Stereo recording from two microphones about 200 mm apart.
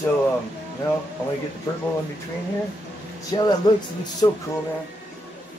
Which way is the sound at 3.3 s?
20° left (ahead or behind).